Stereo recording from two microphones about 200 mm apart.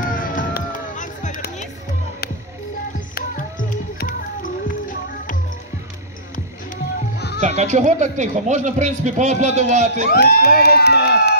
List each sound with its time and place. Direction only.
0.0 s music: 45° left (ahead or behind)
3.2 s music: 45° left (ahead or behind)
6.3 s music: 50° left (ahead or behind)
7.4 s a man's voice: 35° right (ahead or behind)
10.1 s speech: 50° left (ahead or behind)